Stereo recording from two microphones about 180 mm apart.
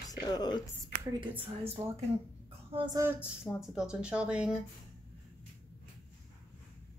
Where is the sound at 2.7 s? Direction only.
20° right (ahead or behind).